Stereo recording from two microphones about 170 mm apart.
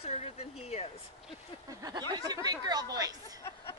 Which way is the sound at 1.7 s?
20° right (ahead or behind).